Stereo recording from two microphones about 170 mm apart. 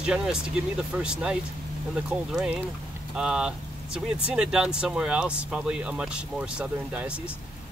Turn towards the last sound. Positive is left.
turn(degrees=-5)  # may be behind; listen again after turning